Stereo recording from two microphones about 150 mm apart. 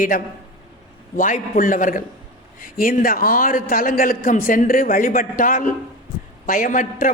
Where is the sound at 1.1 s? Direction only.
65° left (ahead or behind).